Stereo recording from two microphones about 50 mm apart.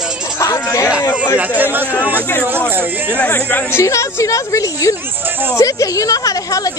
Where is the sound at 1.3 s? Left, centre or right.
Right.